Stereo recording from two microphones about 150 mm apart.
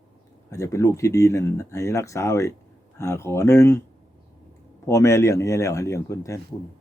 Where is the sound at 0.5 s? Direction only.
20° left (ahead or behind).